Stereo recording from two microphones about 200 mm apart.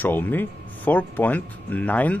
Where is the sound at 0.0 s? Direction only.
10° left (ahead or behind).